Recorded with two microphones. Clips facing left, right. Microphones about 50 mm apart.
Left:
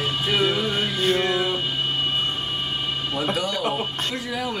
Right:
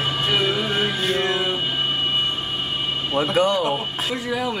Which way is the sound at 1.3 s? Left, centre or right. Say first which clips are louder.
Right 1 dB; centre.